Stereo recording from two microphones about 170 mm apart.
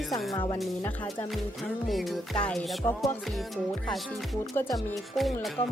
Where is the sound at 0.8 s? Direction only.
10° left (ahead or behind).